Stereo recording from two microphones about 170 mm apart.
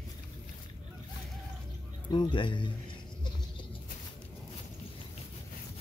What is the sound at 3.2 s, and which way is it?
Patter, 30° left (ahead or behind).